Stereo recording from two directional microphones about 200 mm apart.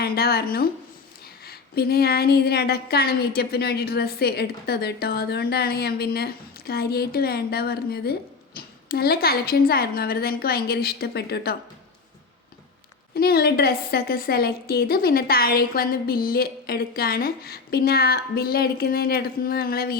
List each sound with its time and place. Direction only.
0.0 s a woman's voice: 50° left (ahead or behind)
13.1 s a woman's voice: 50° left (ahead or behind)